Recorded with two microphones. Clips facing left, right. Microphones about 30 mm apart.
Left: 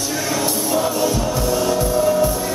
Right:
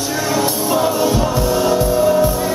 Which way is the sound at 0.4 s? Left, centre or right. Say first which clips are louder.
Right 3 dB; centre.